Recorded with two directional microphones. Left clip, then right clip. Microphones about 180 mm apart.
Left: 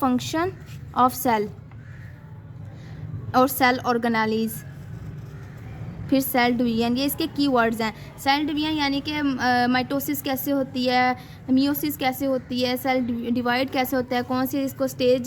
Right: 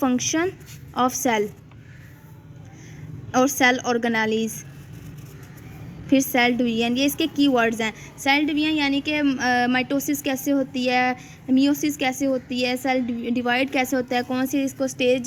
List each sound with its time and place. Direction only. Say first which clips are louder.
0.0 s a woman's voice: right 1 dB; 15° right (ahead or behind)
3.6 s a woman's voice: right 1 dB; 20° right (ahead or behind)
6.3 s a woman's voice: right 1 dB; 20° right (ahead or behind)